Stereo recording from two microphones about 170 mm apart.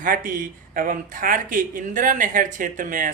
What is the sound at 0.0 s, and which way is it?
Speech, 55° right (ahead or behind).